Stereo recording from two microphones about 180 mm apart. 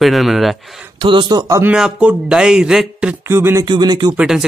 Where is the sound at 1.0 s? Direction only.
25° right (ahead or behind).